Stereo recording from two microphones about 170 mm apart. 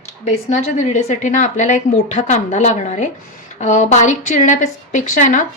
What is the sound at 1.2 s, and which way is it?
A woman's voice, 45° left (ahead or behind).